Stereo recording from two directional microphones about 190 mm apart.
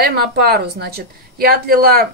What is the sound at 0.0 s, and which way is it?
A woman's voice, 55° right (ahead or behind).